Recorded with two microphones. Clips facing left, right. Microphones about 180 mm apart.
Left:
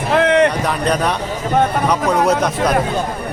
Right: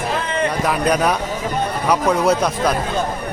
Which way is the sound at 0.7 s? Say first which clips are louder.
Even; 5° right (ahead or behind).